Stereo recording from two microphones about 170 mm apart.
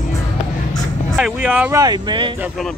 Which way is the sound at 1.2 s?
10° right (ahead or behind).